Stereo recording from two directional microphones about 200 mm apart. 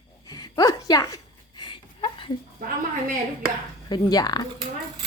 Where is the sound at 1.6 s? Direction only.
25° left (ahead or behind).